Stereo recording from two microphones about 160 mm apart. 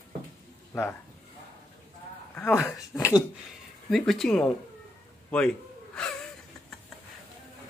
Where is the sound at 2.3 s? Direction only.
15° left (ahead or behind).